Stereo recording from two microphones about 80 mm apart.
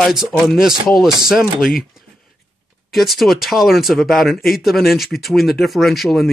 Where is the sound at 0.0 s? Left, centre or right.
Centre.